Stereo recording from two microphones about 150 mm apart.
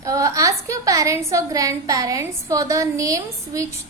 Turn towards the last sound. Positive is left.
turn(degrees=-20)  # may be behind; listen again after turning